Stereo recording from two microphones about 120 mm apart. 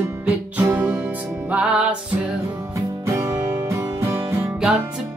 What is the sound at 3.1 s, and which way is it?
Music, 25° right (ahead or behind).